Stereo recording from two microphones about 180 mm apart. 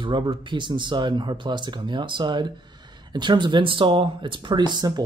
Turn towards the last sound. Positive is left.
turn(degrees=-25)  # may be behind; listen again after turning